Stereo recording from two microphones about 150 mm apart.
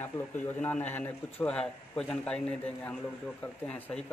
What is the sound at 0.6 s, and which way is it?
A man's voice, 10° left (ahead or behind).